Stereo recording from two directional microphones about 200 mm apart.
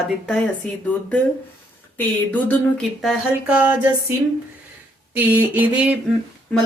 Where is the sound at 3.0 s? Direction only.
5° right (ahead or behind).